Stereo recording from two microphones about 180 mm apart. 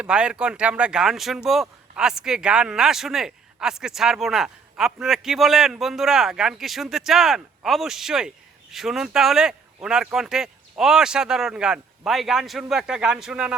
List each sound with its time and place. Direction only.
0.0 s speech: 5° right (ahead or behind)